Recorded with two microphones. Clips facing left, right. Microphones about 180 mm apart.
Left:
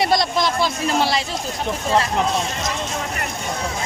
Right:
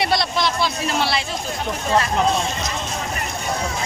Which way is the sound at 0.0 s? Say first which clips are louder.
Left 2 dB; 45° left (ahead or behind).